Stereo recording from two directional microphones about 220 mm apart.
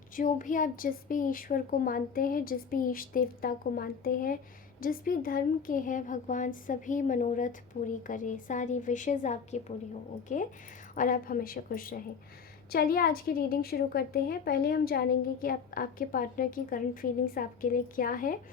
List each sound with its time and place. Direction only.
0.2 s a woman's voice: 35° left (ahead or behind)